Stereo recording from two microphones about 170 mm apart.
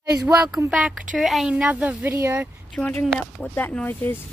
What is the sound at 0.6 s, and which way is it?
Speech, 5° right (ahead or behind).